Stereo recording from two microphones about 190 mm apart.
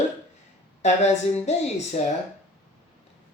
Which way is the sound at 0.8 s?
35° left (ahead or behind).